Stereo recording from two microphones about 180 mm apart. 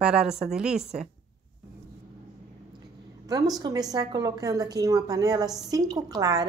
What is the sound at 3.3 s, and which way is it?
A woman's voice, 20° right (ahead or behind).